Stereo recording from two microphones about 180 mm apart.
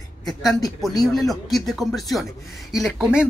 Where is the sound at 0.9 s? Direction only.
20° left (ahead or behind).